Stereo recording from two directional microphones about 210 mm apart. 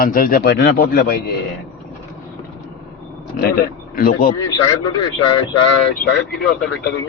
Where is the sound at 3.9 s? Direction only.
45° left (ahead or behind).